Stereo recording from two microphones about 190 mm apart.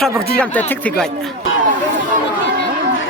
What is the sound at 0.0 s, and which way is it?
Speech, 5° left (ahead or behind).